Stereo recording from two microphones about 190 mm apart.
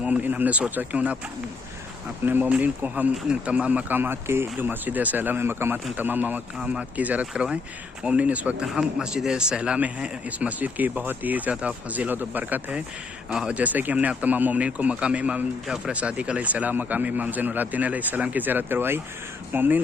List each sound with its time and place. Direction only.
0.0 s speech: 5° right (ahead or behind)
2.2 s speech: 10° right (ahead or behind)